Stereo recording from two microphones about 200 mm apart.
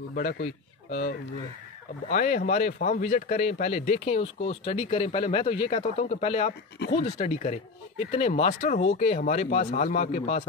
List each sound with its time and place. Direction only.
0.1 s a man's voice: 45° left (ahead or behind)
2.0 s a man's voice: 40° left (ahead or behind)